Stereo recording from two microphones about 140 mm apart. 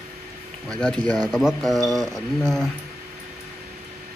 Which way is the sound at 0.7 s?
5° left (ahead or behind).